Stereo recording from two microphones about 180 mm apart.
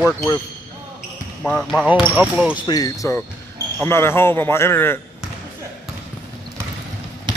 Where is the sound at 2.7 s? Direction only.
20° left (ahead or behind).